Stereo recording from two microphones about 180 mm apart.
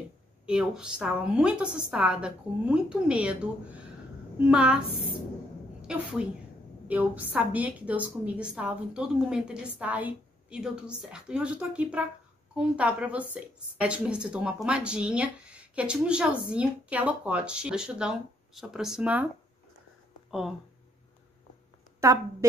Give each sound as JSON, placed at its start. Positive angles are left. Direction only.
{"t": 0.5, "sound": "speech", "side_deg": -5}
{"t": 4.5, "sound": "speech", "side_deg": -5}
{"t": 5.8, "sound": "a woman's voice", "side_deg": -5}
{"t": 20.2, "sound": "speech", "side_deg": 0}
{"t": 22.0, "sound": "a woman's voice", "side_deg": -15}